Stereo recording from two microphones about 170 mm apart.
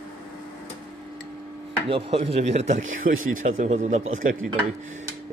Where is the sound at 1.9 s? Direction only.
35° right (ahead or behind).